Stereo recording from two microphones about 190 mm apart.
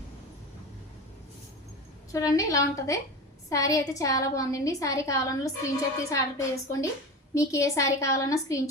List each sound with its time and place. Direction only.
2.1 s a woman's voice: 15° left (ahead or behind)